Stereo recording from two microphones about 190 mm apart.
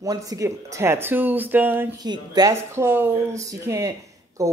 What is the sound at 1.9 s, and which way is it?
A woman's voice, 20° right (ahead or behind).